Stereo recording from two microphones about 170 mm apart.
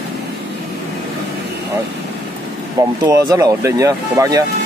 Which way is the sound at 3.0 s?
20° right (ahead or behind).